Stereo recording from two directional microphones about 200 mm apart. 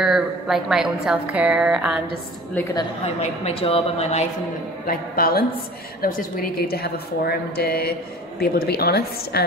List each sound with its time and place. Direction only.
0.0 s a woman's voice: centre (ahead or behind)
3.2 s a woman's voice: 30° left (ahead or behind)
4.8 s a woman's voice: 45° left (ahead or behind)